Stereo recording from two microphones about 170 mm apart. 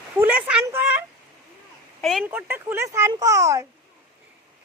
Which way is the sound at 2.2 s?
10° right (ahead or behind).